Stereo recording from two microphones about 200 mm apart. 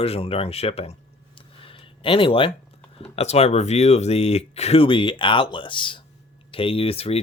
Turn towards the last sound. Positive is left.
turn(degrees=30)  # may be behind; listen again after turning